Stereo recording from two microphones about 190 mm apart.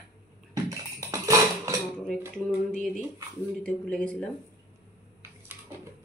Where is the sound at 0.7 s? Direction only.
20° right (ahead or behind).